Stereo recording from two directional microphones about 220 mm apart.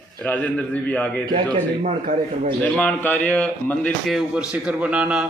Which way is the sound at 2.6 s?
5° left (ahead or behind).